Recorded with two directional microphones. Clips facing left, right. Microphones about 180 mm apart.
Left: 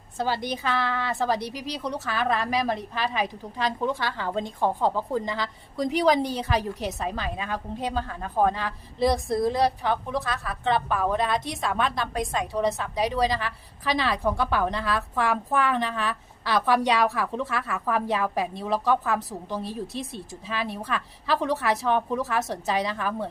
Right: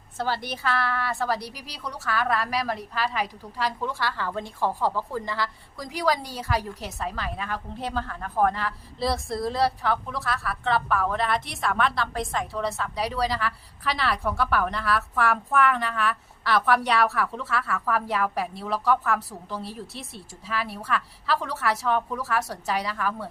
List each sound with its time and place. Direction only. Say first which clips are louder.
0.2 s a woman's voice: left 2 dB; 15° left (ahead or behind)